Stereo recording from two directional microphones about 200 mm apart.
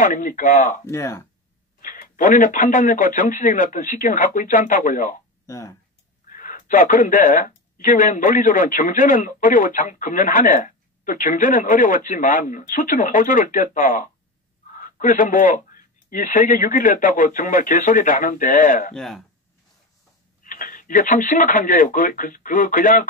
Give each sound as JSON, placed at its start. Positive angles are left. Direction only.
{"t": 0.0, "sound": "speech", "side_deg": 40}
{"t": 0.8, "sound": "speech", "side_deg": 15}
{"t": 1.8, "sound": "speech", "side_deg": 40}
{"t": 5.5, "sound": "speech", "side_deg": 15}
{"t": 6.2, "sound": "speech", "side_deg": 40}
{"t": 18.9, "sound": "speech", "side_deg": 0}
{"t": 20.4, "sound": "speech", "side_deg": 40}